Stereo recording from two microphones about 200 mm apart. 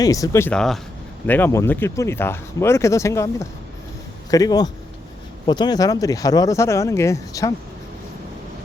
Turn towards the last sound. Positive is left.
turn(degrees=15)  # may be behind; listen again after turning